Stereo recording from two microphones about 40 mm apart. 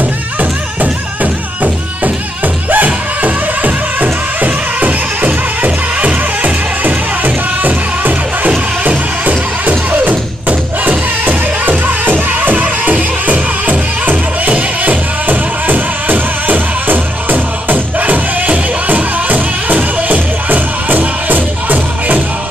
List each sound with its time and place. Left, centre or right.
0.0 s music: right